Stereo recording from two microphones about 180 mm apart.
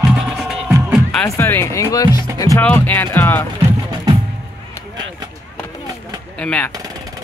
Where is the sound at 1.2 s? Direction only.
15° left (ahead or behind).